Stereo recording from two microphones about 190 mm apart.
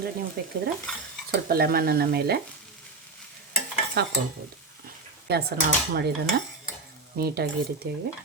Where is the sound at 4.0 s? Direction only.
60° right (ahead or behind).